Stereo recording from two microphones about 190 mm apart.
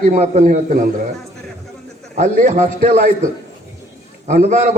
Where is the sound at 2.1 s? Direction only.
40° right (ahead or behind).